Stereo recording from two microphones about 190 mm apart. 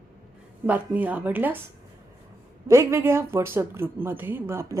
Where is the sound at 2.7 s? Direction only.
15° right (ahead or behind).